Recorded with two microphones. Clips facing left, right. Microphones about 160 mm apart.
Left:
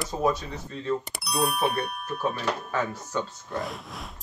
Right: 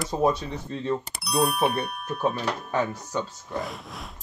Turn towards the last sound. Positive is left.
turn(degrees=0)  # may be behind; listen again after turning